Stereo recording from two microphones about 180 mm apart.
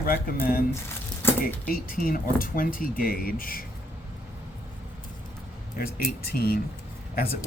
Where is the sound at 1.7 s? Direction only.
55° left (ahead or behind).